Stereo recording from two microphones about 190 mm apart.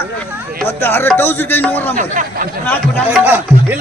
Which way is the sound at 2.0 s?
45° right (ahead or behind).